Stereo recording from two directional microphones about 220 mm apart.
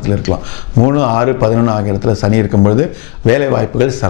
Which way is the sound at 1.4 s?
20° left (ahead or behind).